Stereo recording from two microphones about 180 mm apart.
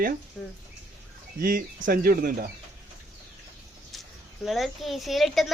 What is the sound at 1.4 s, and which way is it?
Speech, 55° right (ahead or behind).